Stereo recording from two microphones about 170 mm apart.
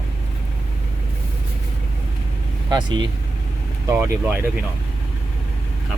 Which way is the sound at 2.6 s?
25° right (ahead or behind).